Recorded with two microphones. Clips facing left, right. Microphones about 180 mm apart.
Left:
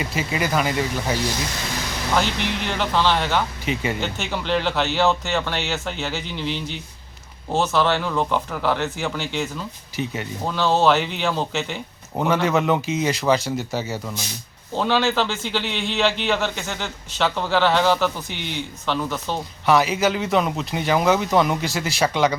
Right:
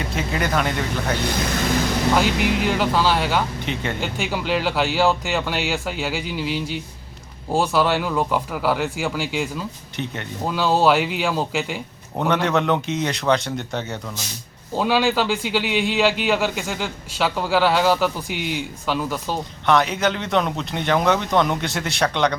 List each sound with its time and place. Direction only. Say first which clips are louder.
0.0 s a man's voice: even; 5° left (ahead or behind)
1.2 s speech: right 3 dB; 55° right (ahead or behind)
2.1 s a man's voice: even; 10° right (ahead or behind)
4.0 s a man's voice: right 1 dB; 10° right (ahead or behind)
12.1 s a man's voice: even; centre (ahead or behind)
14.8 s a man's voice: right 1 dB; 10° right (ahead or behind)
19.6 s a man's voice: left 1 dB; 5° left (ahead or behind)